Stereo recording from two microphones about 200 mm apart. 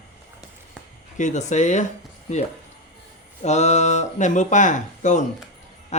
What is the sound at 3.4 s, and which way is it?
Speech, 35° left (ahead or behind).